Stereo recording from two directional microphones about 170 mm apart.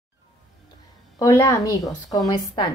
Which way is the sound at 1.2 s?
20° left (ahead or behind).